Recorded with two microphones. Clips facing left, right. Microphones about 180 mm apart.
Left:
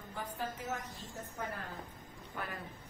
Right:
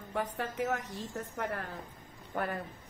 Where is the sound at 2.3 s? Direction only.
55° right (ahead or behind).